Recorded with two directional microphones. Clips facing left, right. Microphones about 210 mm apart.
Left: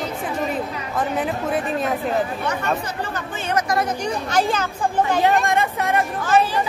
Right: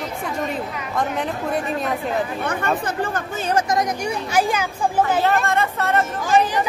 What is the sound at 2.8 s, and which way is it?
Speech, 50° right (ahead or behind).